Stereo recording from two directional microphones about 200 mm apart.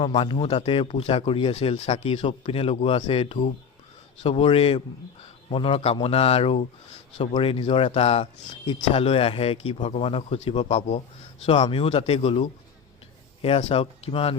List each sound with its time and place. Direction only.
0.0 s speech: 25° left (ahead or behind)